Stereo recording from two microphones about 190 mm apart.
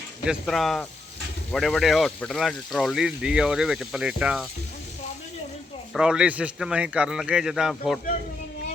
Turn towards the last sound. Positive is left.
turn(degrees=0)  # may be behind; listen again after turning